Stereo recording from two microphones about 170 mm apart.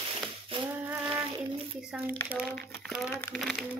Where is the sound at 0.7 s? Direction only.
10° right (ahead or behind).